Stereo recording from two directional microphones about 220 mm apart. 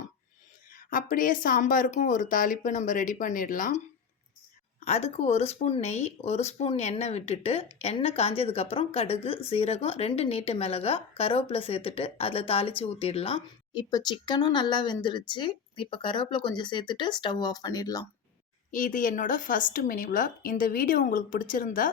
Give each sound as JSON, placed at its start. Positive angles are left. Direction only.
{"t": 0.7, "sound": "speech", "side_deg": 40}
{"t": 4.9, "sound": "a woman's voice", "side_deg": 30}
{"t": 18.7, "sound": "speech", "side_deg": 35}